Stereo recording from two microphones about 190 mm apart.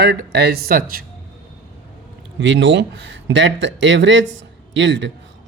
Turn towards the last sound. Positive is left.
turn(degrees=-75)  # may be behind; listen again after turning